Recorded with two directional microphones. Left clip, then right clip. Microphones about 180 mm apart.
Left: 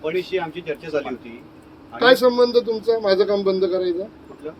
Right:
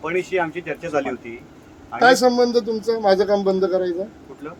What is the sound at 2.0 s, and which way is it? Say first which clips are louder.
Speech: even; 10° right (ahead or behind).